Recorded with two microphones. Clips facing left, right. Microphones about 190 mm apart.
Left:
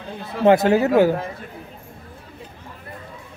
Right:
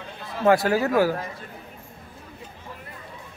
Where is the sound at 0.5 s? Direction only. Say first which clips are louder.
Left 5 dB; 20° left (ahead or behind).